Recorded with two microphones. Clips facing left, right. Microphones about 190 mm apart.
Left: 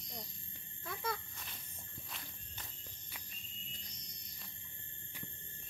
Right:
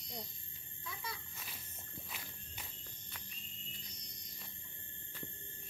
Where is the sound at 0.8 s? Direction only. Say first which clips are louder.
Left 7 dB; 55° left (ahead or behind).